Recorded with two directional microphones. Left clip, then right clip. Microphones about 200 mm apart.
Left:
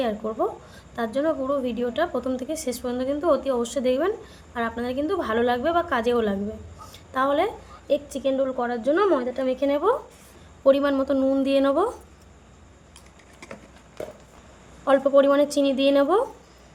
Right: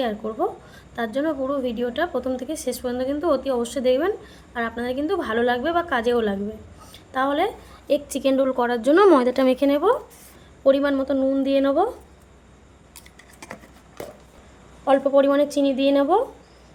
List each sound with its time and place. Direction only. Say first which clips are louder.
0.0 s a woman's voice: right 1 dB; centre (ahead or behind)
7.9 s a woman's voice: right 3 dB; 15° right (ahead or behind); by 9.6 s 30° right (ahead or behind)
9.6 s speech: right 3 dB; 10° right (ahead or behind)
10.6 s a woman's voice: right 1 dB; centre (ahead or behind)
14.8 s a woman's voice: even; centre (ahead or behind)